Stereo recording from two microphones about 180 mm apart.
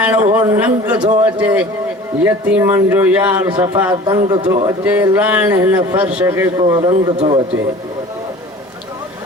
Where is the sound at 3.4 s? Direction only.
20° right (ahead or behind).